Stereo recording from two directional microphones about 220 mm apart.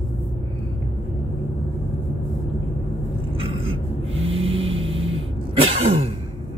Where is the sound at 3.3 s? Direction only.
25° right (ahead or behind).